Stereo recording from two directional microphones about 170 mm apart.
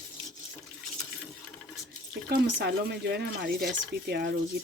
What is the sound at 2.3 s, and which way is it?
Speech, 70° right (ahead or behind).